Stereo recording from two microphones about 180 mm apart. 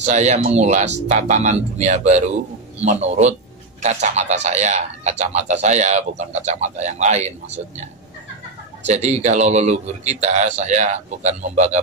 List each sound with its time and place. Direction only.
0.0 s a man's voice: 40° right (ahead or behind)
8.8 s a man's voice: 40° right (ahead or behind)